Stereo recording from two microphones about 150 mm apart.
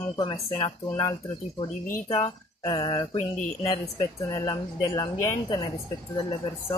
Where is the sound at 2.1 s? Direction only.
25° left (ahead or behind).